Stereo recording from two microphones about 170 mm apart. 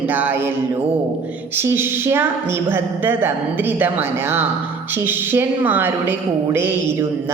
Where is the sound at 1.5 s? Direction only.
15° right (ahead or behind).